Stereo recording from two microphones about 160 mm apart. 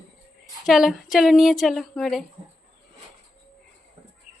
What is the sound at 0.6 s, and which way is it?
Speech, centre (ahead or behind).